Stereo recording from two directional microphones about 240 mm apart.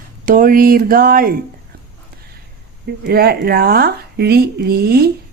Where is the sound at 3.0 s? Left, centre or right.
Right.